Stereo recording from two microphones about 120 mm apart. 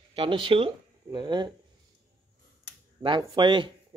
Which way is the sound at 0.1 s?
45° right (ahead or behind).